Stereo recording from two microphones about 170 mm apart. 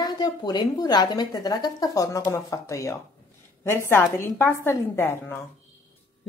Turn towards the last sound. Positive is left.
turn(degrees=15)  # may be behind; listen again after turning